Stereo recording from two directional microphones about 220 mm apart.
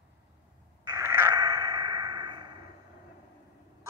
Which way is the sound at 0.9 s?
10° right (ahead or behind).